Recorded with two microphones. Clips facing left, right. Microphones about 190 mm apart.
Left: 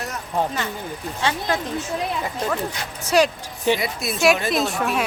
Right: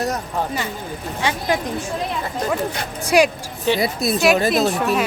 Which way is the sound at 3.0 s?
15° right (ahead or behind).